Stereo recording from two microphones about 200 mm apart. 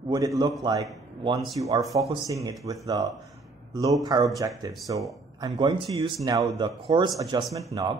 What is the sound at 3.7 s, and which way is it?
Speech, 15° right (ahead or behind).